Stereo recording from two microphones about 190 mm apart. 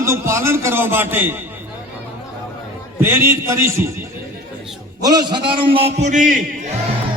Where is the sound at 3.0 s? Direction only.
10° right (ahead or behind).